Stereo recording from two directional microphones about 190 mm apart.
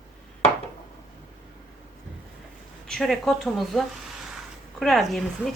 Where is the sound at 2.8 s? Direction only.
Centre (ahead or behind).